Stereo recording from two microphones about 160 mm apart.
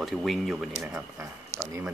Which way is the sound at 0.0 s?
Centre (ahead or behind).